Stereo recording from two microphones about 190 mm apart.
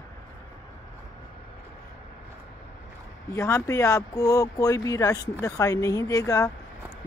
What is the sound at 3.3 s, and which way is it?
Speech, 15° left (ahead or behind).